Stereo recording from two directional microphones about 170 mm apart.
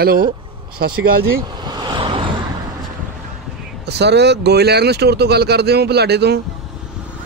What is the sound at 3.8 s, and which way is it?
Speech, 80° right.